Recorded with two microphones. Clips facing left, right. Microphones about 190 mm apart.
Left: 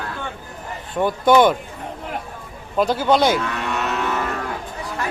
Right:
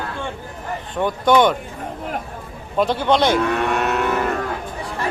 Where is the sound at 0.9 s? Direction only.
5° left (ahead or behind).